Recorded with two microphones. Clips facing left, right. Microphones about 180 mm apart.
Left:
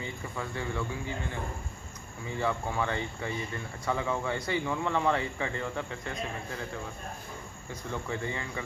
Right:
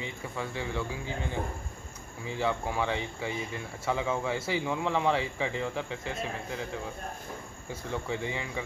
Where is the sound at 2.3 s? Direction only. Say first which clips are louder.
Right 1 dB; centre (ahead or behind).